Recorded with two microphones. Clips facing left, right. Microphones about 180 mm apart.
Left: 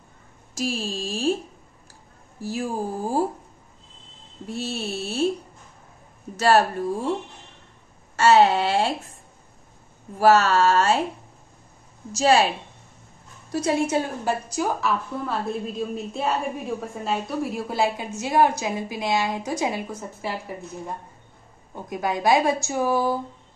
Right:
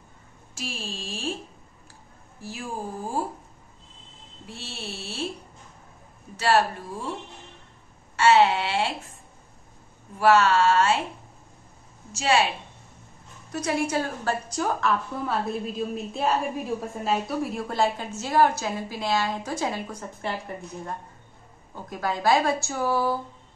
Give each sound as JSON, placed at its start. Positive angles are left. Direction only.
{"t": 0.6, "sound": "speech", "side_deg": 40}
{"t": 2.4, "sound": "speech", "side_deg": 40}
{"t": 4.5, "sound": "a sound", "side_deg": 40}
{"t": 6.3, "sound": "a sound", "side_deg": 45}
{"t": 8.2, "sound": "speech", "side_deg": 40}
{"t": 10.1, "sound": "speech", "side_deg": 40}
{"t": 12.1, "sound": "speech", "side_deg": 40}
{"t": 13.5, "sound": "a woman's voice", "side_deg": 25}
{"t": 14.5, "sound": "a woman's voice", "side_deg": 5}
{"t": 21.7, "sound": "a woman's voice", "side_deg": 15}